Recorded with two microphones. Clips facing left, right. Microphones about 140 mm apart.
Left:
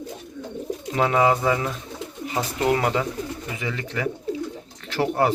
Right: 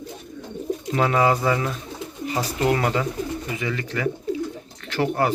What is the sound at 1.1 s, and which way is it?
Speech, 15° left (ahead or behind).